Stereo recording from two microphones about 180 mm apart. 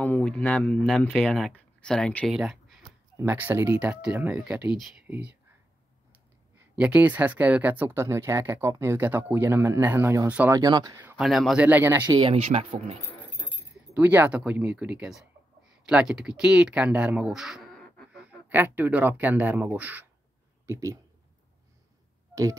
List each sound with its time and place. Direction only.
0.0 s speech: 5° left (ahead or behind); by 5.3 s 10° right (ahead or behind)
6.7 s speech: 5° right (ahead or behind)
10.6 s speech: 20° right (ahead or behind)
11.0 s speech: 10° right (ahead or behind)
12.0 s speech: 25° right (ahead or behind)
13.9 s speech: 10° right (ahead or behind)
18.5 s speech: 10° right (ahead or behind)
22.3 s tick-tock: 15° right (ahead or behind)